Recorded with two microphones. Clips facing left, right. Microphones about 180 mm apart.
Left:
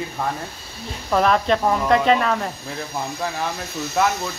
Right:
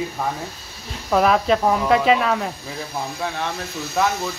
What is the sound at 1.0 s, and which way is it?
Speech, 5° right (ahead or behind).